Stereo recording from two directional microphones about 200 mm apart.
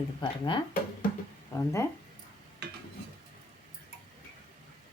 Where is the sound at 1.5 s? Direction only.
15° left (ahead or behind).